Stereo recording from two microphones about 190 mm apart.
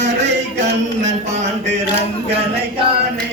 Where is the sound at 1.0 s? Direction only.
35° right (ahead or behind).